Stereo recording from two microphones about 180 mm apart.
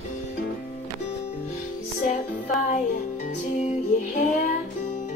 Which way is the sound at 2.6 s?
40° left (ahead or behind).